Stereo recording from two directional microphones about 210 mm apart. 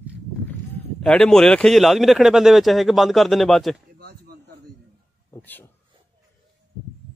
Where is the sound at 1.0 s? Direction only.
5° left (ahead or behind).